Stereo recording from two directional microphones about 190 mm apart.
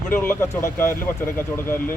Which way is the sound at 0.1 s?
10° left (ahead or behind).